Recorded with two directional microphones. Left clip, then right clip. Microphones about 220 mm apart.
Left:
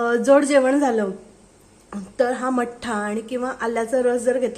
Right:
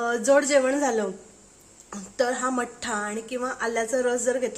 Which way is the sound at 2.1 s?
10° left (ahead or behind).